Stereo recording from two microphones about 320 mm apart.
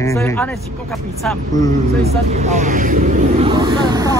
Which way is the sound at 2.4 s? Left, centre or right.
Right.